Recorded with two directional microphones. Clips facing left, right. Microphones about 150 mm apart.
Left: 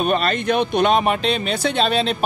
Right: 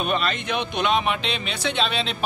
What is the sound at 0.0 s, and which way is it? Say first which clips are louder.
A man's voice: left 5 dB; 45° left (ahead or behind).